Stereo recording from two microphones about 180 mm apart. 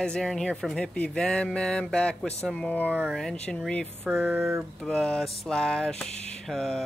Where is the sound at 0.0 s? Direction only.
5° left (ahead or behind).